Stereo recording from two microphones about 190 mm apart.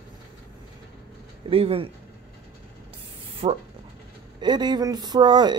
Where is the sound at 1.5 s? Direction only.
30° right (ahead or behind).